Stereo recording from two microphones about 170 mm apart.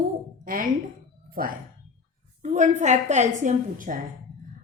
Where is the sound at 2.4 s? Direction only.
45° right (ahead or behind).